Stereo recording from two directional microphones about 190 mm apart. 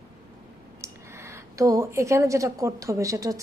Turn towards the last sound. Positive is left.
turn(degrees=-15)  # may be behind; listen again after turning